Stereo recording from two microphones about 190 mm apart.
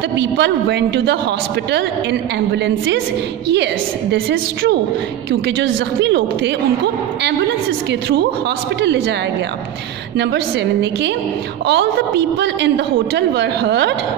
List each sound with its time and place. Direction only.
0.2 s speech: 65° right (ahead or behind)
4.1 s a woman's voice: 65° right (ahead or behind)
10.1 s speech: 65° right (ahead or behind)